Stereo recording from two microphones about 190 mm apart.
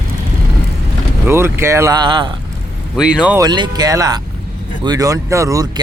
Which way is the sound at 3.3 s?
20° right (ahead or behind).